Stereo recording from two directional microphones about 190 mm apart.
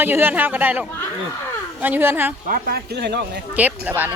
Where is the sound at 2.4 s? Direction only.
50° right (ahead or behind).